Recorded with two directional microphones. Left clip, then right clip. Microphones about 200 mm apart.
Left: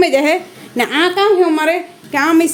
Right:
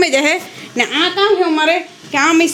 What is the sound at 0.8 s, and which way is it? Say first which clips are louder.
A woman's voice: left 1 dB; 30° left (ahead or behind).